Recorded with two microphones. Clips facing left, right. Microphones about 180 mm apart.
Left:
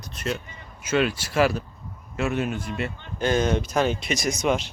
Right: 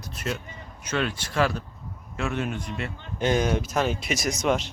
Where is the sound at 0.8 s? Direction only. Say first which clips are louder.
Left 5 dB; 10° left (ahead or behind).